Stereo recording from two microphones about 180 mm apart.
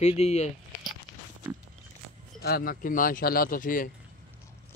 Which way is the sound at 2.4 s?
60° left (ahead or behind).